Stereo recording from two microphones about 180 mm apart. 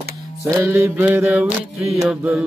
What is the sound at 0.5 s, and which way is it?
Music, 15° right (ahead or behind).